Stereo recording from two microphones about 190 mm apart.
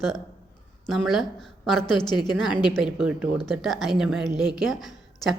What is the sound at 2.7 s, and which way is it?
A woman's voice, 5° right (ahead or behind).